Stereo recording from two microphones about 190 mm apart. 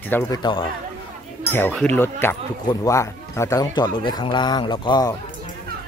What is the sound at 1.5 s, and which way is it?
Speech, 10° left (ahead or behind).